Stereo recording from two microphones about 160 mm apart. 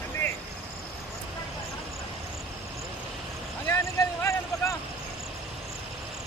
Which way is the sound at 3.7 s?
15° left (ahead or behind).